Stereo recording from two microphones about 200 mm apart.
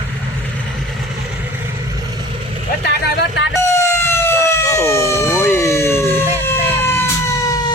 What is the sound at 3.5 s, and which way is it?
Emergency vehicle, 15° left (ahead or behind).